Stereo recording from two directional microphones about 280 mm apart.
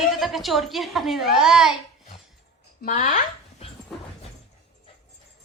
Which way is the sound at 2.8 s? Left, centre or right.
Left.